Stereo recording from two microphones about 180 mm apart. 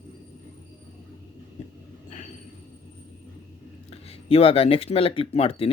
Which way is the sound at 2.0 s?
45° left (ahead or behind).